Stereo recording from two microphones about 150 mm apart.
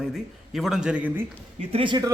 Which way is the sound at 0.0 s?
Centre (ahead or behind).